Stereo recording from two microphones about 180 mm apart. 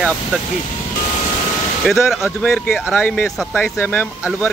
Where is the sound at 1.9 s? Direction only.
Centre (ahead or behind).